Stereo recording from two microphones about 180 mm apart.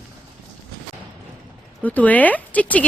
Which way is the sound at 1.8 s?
10° left (ahead or behind).